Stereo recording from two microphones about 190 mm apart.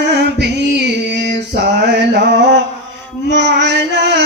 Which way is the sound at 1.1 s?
65° right (ahead or behind).